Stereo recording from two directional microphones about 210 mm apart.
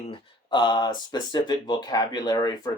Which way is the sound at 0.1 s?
20° left (ahead or behind).